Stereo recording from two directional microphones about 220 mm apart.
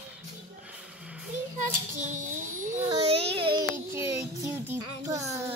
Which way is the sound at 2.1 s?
35° right (ahead or behind).